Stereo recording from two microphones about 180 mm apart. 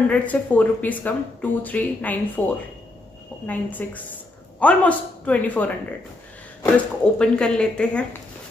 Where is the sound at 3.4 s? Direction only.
10° left (ahead or behind).